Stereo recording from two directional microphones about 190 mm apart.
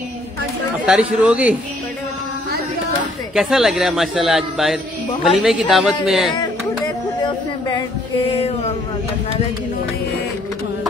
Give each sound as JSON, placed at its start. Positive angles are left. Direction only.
{"t": 0.8, "sound": "speech", "side_deg": -5}
{"t": 3.3, "sound": "a man's voice", "side_deg": 0}
{"t": 7.2, "sound": "a sound", "side_deg": 25}